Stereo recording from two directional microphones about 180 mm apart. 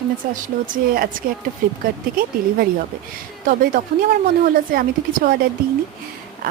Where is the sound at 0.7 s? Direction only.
55° right (ahead or behind).